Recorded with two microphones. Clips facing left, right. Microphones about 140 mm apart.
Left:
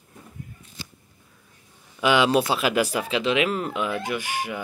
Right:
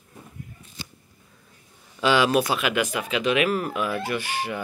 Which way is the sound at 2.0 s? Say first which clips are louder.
Left 1 dB; 20° left (ahead or behind).